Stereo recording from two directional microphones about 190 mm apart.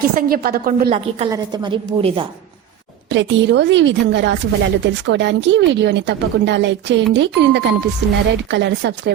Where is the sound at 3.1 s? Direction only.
70° right (ahead or behind).